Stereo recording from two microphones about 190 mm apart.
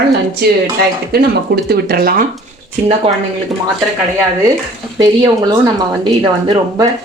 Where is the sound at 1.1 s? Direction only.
55° right (ahead or behind).